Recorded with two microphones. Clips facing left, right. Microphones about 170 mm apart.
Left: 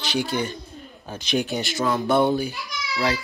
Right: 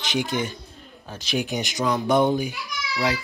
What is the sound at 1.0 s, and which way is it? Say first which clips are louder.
Speech: left 3 dB; centre (ahead or behind).